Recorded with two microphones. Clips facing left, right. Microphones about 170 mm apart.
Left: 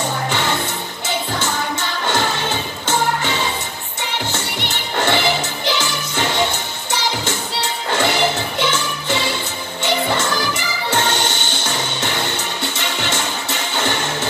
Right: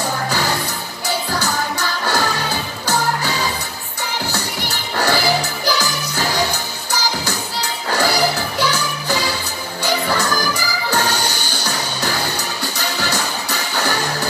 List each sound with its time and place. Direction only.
1.4 s music: 20° left (ahead or behind)
4.6 s music: 20° left (ahead or behind)